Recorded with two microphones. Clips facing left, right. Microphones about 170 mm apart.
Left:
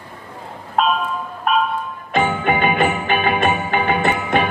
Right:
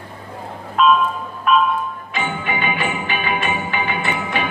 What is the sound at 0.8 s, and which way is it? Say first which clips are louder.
Music: right 3 dB; 45° left (ahead or behind).